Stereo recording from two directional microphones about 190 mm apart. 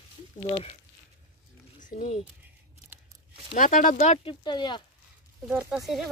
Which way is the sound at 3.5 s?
45° left (ahead or behind).